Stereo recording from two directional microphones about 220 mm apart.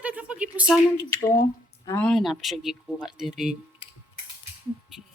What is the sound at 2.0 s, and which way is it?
Speech, centre (ahead or behind).